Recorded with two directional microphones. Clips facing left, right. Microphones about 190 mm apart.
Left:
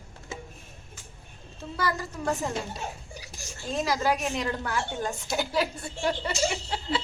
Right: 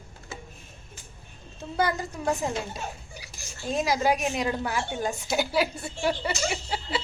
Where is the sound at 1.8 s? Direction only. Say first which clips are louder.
Right 3 dB; 20° right (ahead or behind).